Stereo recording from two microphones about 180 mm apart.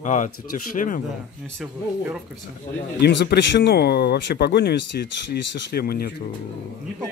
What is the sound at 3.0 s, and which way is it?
Speech, 65° left (ahead or behind).